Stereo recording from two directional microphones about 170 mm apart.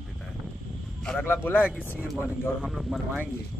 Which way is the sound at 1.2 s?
10° left (ahead or behind).